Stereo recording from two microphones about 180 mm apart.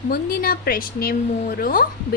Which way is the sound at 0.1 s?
55° left (ahead or behind).